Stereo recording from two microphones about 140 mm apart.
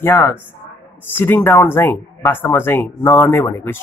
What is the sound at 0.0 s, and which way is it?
Speech, 15° left (ahead or behind).